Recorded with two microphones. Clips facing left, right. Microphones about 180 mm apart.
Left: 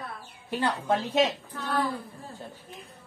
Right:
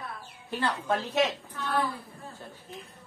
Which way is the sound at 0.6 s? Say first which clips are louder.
Left 2 dB; 20° left (ahead or behind).